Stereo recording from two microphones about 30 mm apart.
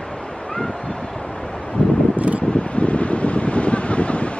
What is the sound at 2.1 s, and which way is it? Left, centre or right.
Wind, right.